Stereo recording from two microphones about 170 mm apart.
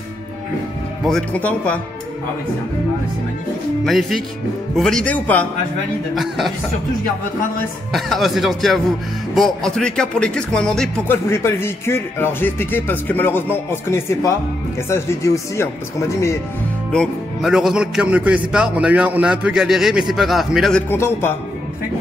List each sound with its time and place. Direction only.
1.0 s speech: 5° left (ahead or behind)
3.8 s a man's voice: centre (ahead or behind)
7.9 s a man's voice: centre (ahead or behind)
11.2 s speech: 15° left (ahead or behind)
16.9 s a man's voice: centre (ahead or behind)
20.9 s speech: 15° left (ahead or behind)